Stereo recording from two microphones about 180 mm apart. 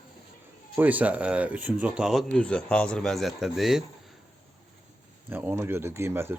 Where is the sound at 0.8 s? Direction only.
10° right (ahead or behind).